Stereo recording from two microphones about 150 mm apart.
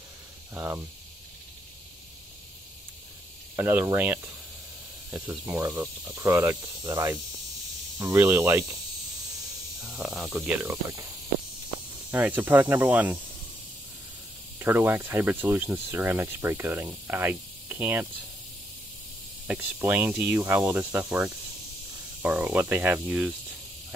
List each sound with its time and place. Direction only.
0.6 s speech: 15° right (ahead or behind)
3.5 s speech: 15° right (ahead or behind)
9.8 s speech: centre (ahead or behind); by 11.1 s 20° right (ahead or behind)
12.1 s speech: 10° right (ahead or behind)
14.6 s speech: 15° right (ahead or behind)
19.4 s speech: 10° right (ahead or behind)